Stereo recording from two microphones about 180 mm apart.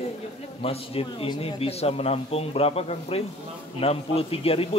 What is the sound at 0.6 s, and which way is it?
A man's voice, 30° left (ahead or behind).